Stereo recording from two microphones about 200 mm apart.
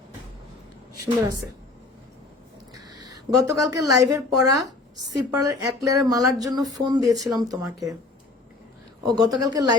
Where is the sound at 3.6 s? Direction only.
15° right (ahead or behind).